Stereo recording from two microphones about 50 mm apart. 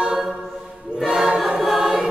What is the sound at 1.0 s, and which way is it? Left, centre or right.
Choir, centre.